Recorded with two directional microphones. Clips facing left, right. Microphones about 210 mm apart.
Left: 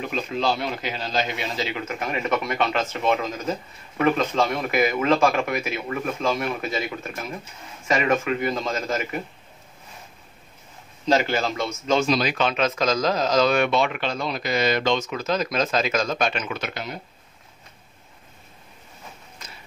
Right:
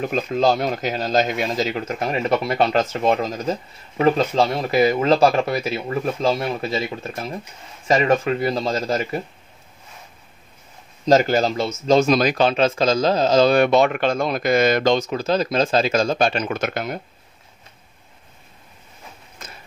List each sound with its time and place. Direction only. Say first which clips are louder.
0.0 s speech: right 6 dB; 45° right (ahead or behind)
11.1 s speech: right 5 dB; 40° right (ahead or behind)
12.1 s speech: right 5 dB; 45° right (ahead or behind)
16.4 s speech: right 6 dB; 50° right (ahead or behind)
19.4 s a sound: right 5 dB; 50° right (ahead or behind)